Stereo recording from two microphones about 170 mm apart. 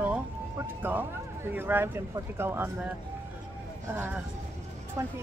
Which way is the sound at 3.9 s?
10° right (ahead or behind).